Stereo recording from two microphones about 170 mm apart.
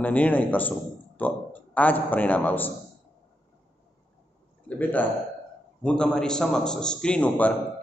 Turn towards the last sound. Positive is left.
turn(degrees=5)  # may be behind; listen again after turning